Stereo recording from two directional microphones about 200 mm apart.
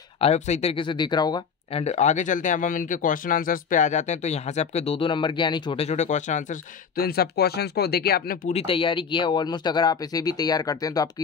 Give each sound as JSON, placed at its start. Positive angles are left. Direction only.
{"t": 0.2, "sound": "speech", "side_deg": 30}